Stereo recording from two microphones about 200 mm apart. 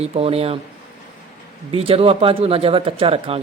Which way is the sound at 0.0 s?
30° right (ahead or behind).